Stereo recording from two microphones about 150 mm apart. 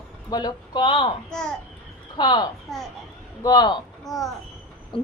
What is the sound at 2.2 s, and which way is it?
Speech, 30° left (ahead or behind).